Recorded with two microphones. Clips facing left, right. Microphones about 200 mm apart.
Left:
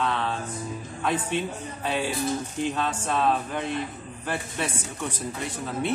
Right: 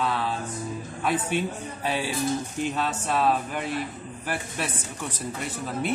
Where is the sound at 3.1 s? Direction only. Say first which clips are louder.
Right 1 dB; 5° right (ahead or behind).